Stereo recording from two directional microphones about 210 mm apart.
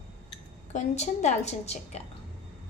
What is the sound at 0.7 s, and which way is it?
A woman's voice, 35° left (ahead or behind).